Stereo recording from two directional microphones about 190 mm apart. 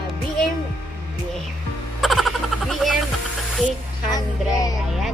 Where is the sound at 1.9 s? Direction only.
Centre (ahead or behind).